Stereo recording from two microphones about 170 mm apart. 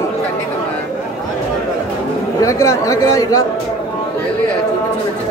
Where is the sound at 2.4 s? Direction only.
20° left (ahead or behind).